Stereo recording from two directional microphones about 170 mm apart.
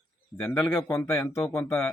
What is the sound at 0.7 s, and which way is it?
Speech, 20° left (ahead or behind).